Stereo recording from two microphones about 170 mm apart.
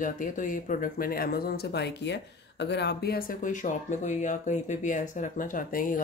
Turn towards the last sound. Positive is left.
turn(degrees=55)  # may be behind; listen again after turning